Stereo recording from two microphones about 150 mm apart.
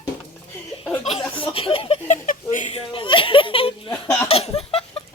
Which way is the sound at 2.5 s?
55° left (ahead or behind).